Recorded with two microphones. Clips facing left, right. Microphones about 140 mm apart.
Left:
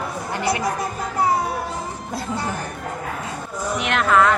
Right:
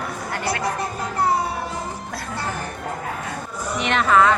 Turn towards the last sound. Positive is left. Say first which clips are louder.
# even
turn(degrees=0)  # may be behind; listen again after turning